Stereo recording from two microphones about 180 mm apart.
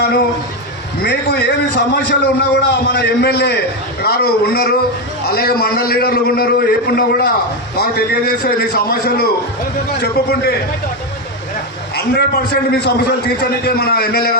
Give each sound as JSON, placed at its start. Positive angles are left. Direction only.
{"t": 1.0, "sound": "a man's voice", "side_deg": 65}
{"t": 11.9, "sound": "a man's voice", "side_deg": 60}